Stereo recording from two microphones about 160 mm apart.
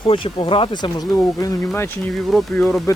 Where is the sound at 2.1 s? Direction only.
Centre (ahead or behind).